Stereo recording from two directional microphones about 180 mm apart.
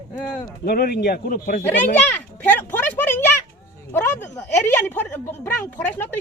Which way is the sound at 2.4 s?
10° left (ahead or behind).